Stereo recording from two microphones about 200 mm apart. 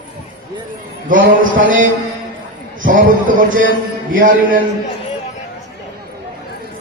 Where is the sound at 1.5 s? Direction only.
75° right (ahead or behind).